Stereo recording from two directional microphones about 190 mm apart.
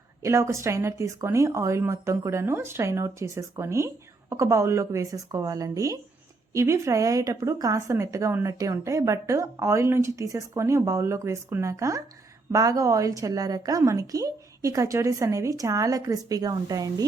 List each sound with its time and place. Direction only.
0.2 s speech: 15° right (ahead or behind)